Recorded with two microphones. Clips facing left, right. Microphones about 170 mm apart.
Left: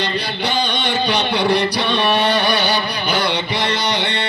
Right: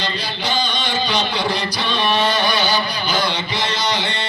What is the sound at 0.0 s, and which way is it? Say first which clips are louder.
Music: left 3 dB; 60° left (ahead or behind).